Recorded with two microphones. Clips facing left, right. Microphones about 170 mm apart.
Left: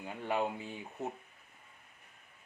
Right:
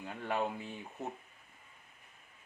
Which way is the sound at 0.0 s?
10° left (ahead or behind).